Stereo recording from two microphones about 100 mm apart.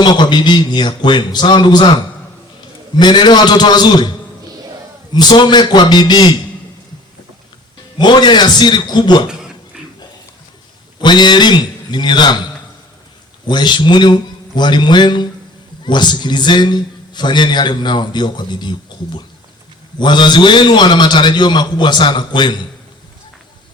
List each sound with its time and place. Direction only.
0.0 s a man's voice: 50° left (ahead or behind)
3.0 s a man's voice: 50° left (ahead or behind)
5.1 s a man's voice: 45° left (ahead or behind)
7.9 s a man's voice: 50° left (ahead or behind)
11.0 s a man's voice: 50° left (ahead or behind)
13.5 s a man's voice: 50° left (ahead or behind)